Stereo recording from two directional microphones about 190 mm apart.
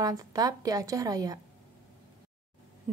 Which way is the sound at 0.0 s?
20° right (ahead or behind).